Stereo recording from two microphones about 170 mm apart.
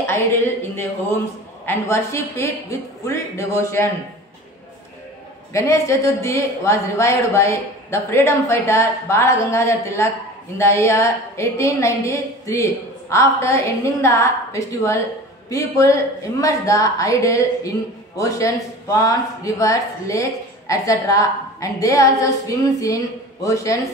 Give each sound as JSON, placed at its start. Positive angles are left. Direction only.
{"t": 0.0, "sound": "speech", "side_deg": 15}
{"t": 5.5, "sound": "a woman's voice", "side_deg": 15}